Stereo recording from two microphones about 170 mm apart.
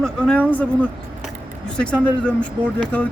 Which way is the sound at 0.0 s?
5° left (ahead or behind).